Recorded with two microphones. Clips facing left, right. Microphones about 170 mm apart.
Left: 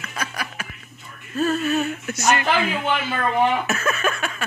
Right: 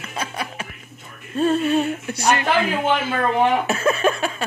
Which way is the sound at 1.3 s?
30° right (ahead or behind).